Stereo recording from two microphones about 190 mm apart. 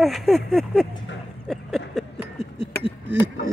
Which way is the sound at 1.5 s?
Centre (ahead or behind).